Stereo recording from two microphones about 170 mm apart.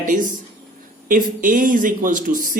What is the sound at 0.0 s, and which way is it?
Speech, 50° right (ahead or behind).